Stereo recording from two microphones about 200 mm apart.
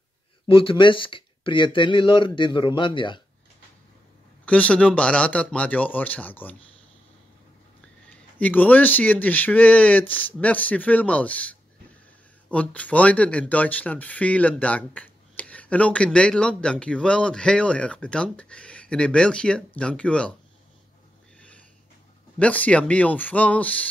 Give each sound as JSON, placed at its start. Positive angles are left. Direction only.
{"t": 0.5, "sound": "speech", "side_deg": 25}
{"t": 4.5, "sound": "speech", "side_deg": 5}
{"t": 8.1, "sound": "speech", "side_deg": 5}
{"t": 22.4, "sound": "speech", "side_deg": 5}